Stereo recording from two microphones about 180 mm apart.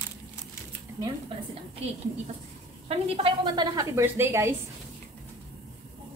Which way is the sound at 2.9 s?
25° right (ahead or behind).